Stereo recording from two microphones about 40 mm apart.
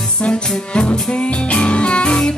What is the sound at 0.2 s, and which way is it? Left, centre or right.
Music, left.